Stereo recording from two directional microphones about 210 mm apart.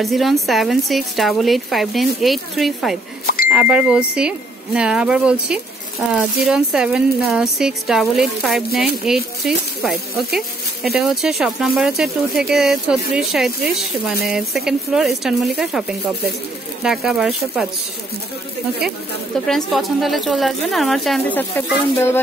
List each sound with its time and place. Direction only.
0.0 s speech: centre (ahead or behind)
19.4 s speech: centre (ahead or behind)